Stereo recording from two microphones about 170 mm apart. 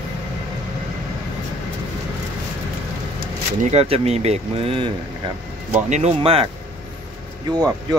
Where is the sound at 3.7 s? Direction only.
35° right (ahead or behind).